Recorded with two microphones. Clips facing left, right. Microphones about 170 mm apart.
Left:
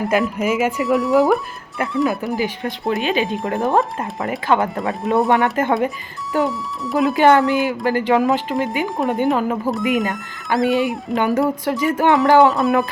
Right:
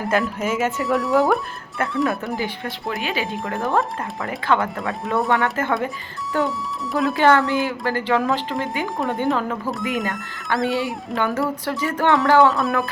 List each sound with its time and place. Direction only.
0.2 s speech: 5° left (ahead or behind)
2.4 s speech: 20° left (ahead or behind)
6.4 s speech: centre (ahead or behind)
7.0 s speech: 20° left (ahead or behind)